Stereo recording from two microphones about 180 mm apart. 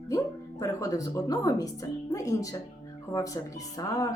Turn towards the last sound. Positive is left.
turn(degrees=20)  # may be behind; listen again after turning